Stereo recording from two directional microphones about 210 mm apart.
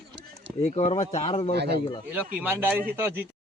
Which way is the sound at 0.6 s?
30° left (ahead or behind).